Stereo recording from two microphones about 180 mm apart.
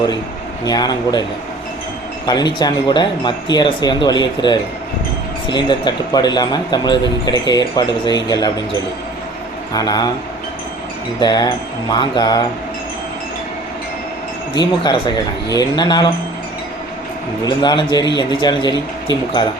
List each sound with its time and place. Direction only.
0.6 s a man's voice: 20° left (ahead or behind)
2.2 s a man's voice: 25° left (ahead or behind)
9.7 s a man's voice: 20° left (ahead or behind)
11.2 s a man's voice: 25° left (ahead or behind)
14.5 s a man's voice: 25° left (ahead or behind)
17.4 s a man's voice: 25° left (ahead or behind)